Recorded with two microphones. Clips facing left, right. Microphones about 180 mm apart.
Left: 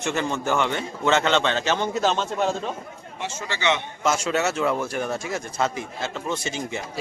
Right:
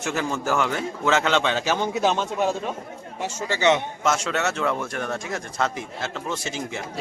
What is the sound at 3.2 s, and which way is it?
Speech, 45° right (ahead or behind).